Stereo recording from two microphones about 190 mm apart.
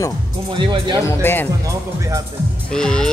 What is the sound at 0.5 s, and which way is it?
Speech, 25° right (ahead or behind).